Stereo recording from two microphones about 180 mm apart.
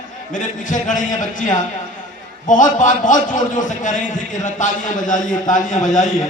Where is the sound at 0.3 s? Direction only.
45° left (ahead or behind).